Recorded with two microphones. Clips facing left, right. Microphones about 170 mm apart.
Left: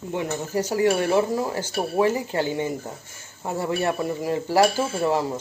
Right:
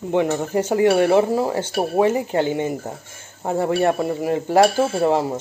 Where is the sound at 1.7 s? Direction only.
40° right (ahead or behind).